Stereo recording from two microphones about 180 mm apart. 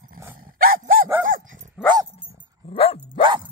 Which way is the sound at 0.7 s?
50° right (ahead or behind).